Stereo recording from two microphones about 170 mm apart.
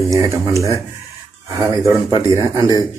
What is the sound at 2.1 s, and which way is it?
Speech, 20° right (ahead or behind).